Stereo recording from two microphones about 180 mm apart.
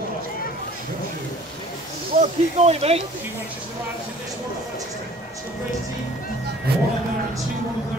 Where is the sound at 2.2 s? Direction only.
35° right (ahead or behind).